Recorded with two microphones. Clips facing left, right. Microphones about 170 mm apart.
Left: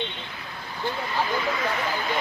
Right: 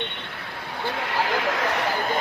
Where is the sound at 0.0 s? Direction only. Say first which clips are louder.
Even; 60° right (ahead or behind).